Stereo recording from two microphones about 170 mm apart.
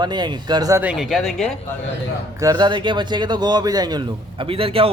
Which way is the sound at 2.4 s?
25° right (ahead or behind).